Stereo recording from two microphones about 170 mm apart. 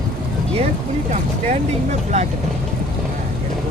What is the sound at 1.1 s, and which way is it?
Vehicle, 45° right (ahead or behind).